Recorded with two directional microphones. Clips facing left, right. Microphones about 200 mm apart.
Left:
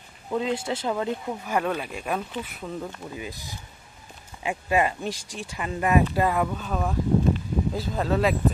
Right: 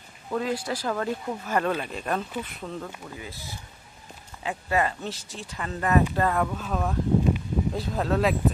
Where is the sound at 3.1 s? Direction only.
15° left (ahead or behind); by 8.3 s centre (ahead or behind).